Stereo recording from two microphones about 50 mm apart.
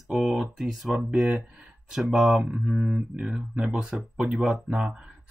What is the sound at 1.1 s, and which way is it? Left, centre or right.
Speech, centre.